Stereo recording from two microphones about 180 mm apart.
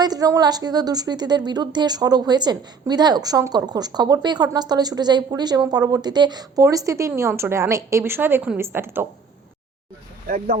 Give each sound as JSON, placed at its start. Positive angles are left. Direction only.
{"t": 0.0, "sound": "a woman's voice", "side_deg": -20}
{"t": 10.2, "sound": "speech", "side_deg": -55}